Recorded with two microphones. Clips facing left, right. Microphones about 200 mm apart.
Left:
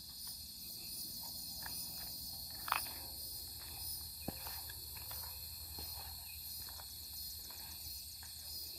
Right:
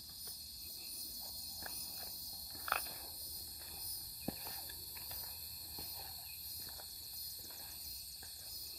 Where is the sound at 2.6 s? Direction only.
45° right (ahead or behind).